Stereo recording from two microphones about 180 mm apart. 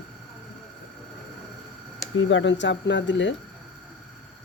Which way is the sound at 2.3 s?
90° left.